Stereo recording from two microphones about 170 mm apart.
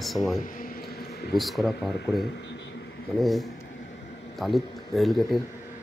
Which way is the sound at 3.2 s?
Centre (ahead or behind).